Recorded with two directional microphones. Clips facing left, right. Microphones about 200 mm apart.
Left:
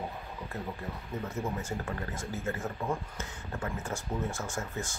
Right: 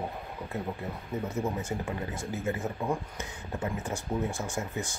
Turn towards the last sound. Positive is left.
turn(degrees=-15)  # may be behind; listen again after turning